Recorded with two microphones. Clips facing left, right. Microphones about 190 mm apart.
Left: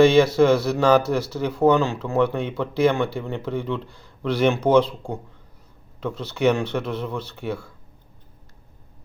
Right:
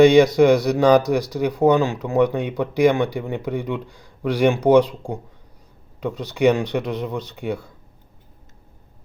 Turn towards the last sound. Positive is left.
turn(degrees=-20)  # may be behind; listen again after turning